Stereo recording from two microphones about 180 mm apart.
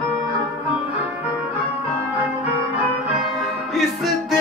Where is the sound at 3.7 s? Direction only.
Centre (ahead or behind).